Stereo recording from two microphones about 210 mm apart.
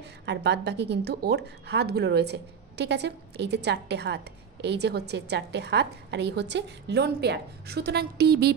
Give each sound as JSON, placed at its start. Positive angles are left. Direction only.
{"t": 0.2, "sound": "speech", "side_deg": -55}